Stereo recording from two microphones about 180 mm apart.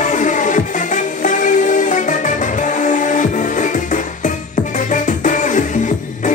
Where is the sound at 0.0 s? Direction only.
45° left (ahead or behind).